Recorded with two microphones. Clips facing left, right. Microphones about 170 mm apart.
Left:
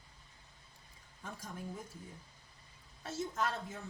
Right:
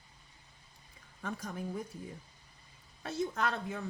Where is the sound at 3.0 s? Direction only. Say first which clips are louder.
Right 3 dB; 65° right (ahead or behind).